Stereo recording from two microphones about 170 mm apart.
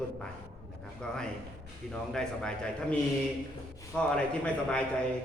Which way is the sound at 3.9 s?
5° left (ahead or behind).